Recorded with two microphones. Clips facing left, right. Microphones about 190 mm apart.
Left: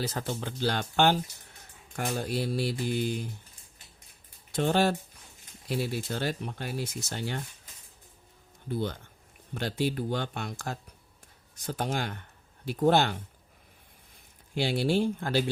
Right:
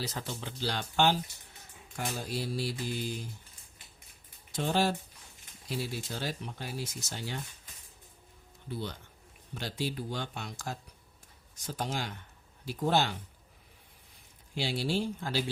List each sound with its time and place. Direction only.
0.0 s speech: 50° left (ahead or behind)
4.5 s speech: 60° left (ahead or behind)
8.7 s speech: 55° left (ahead or behind)
14.5 s speech: 55° left (ahead or behind)